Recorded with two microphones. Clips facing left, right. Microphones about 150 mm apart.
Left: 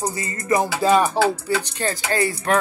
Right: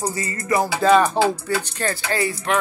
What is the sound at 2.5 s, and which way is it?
Music, 40° left (ahead or behind).